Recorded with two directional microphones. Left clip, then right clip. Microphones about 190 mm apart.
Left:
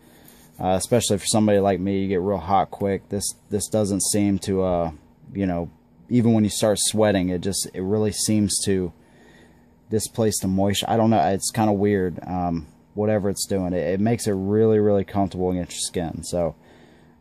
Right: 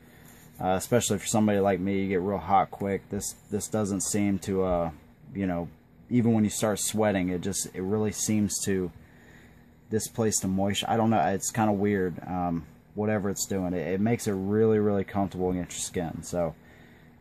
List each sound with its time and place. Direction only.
0.6 s speech: 45° left (ahead or behind)
9.8 s speech: 45° left (ahead or behind)